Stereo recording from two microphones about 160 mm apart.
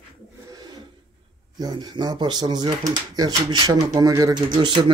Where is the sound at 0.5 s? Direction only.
25° right (ahead or behind).